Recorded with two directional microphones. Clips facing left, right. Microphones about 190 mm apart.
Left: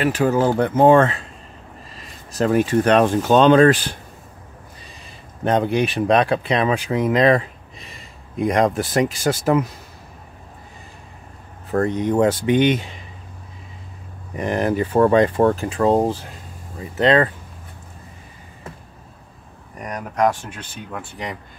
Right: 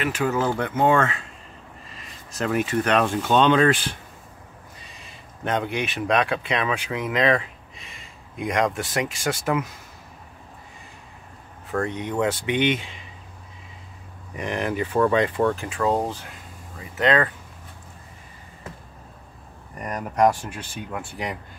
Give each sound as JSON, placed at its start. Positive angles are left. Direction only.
{"t": 0.0, "sound": "speech", "side_deg": 35}
{"t": 2.3, "sound": "speech", "side_deg": 35}
{"t": 5.4, "sound": "speech", "side_deg": 35}
{"t": 11.7, "sound": "speech", "side_deg": 40}
{"t": 14.3, "sound": "speech", "side_deg": 40}
{"t": 19.8, "sound": "speech", "side_deg": 0}